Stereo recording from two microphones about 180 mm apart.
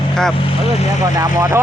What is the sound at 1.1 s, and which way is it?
Speech, 15° right (ahead or behind).